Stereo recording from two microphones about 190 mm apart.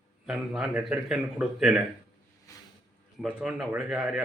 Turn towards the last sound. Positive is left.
turn(degrees=-5)  # may be behind; listen again after turning